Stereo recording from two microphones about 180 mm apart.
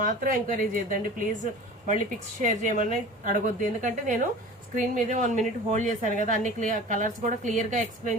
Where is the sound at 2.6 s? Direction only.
45° right (ahead or behind).